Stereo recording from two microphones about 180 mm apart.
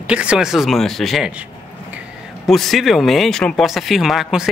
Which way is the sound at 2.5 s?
Centre (ahead or behind).